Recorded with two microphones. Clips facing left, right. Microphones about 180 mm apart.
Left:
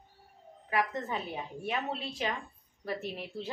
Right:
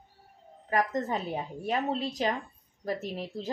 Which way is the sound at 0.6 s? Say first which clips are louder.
Right 4 dB; 40° right (ahead or behind).